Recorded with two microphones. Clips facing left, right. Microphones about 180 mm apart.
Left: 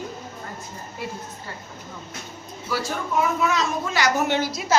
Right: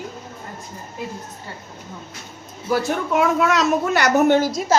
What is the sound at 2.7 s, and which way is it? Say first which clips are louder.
A woman's voice: right 6 dB; 60° right (ahead or behind).